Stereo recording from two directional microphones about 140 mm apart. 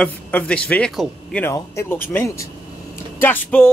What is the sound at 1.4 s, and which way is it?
Speech, 20° left (ahead or behind).